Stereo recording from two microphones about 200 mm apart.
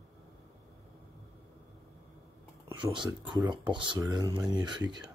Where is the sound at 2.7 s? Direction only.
25° right (ahead or behind).